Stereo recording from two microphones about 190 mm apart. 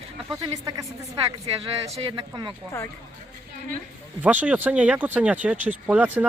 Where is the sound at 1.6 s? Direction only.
30° right (ahead or behind).